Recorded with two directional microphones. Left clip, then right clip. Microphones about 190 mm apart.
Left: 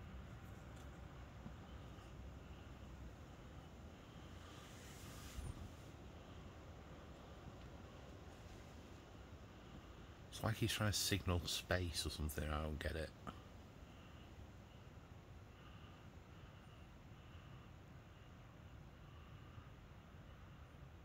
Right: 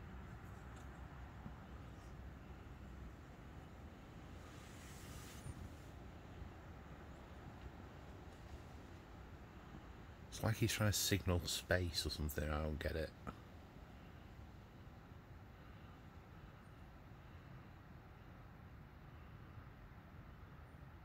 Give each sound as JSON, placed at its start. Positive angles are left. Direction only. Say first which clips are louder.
{"t": 10.3, "sound": "speech", "louder": "right 1 dB", "side_deg": -20}